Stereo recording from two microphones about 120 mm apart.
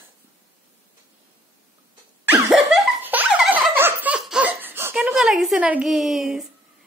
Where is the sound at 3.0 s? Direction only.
15° right (ahead or behind).